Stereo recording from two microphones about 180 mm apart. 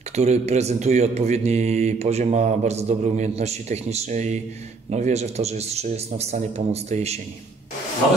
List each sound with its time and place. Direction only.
0.1 s speech: 35° right (ahead or behind)